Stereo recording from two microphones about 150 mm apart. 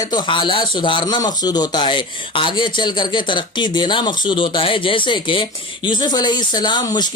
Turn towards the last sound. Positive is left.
turn(degrees=30)  # may be behind; listen again after turning